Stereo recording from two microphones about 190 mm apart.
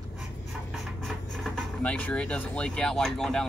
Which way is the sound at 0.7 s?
Centre (ahead or behind).